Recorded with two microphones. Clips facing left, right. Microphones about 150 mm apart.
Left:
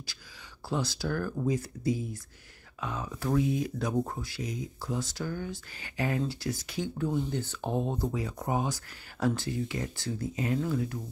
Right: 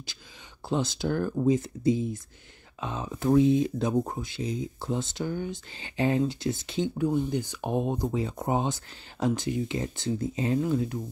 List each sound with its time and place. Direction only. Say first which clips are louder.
0.7 s speech: right 4 dB; 20° right (ahead or behind)